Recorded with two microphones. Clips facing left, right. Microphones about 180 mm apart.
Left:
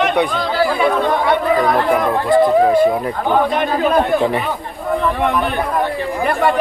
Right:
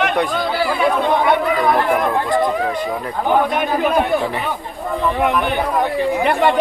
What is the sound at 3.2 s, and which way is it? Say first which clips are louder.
Speech: right 1 dB; 10° right (ahead or behind).